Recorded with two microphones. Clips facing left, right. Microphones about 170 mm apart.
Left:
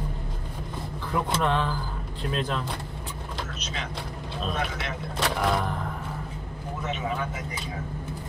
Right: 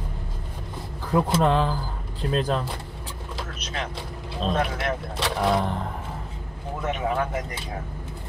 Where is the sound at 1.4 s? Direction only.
35° right (ahead or behind).